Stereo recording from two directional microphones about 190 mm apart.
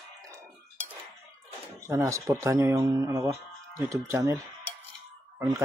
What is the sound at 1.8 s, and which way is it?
Speech, 15° right (ahead or behind).